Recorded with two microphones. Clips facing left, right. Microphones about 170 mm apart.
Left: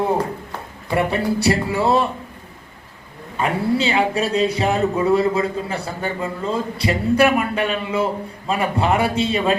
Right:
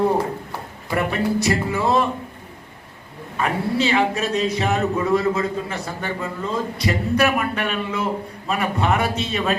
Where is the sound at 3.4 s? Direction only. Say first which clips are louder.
Left 2 dB; 30° left (ahead or behind).